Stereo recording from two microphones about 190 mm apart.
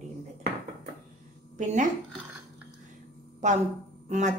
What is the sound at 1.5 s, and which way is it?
Speech, 40° right (ahead or behind).